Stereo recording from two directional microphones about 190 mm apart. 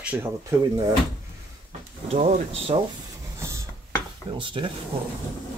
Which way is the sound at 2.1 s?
35° right (ahead or behind).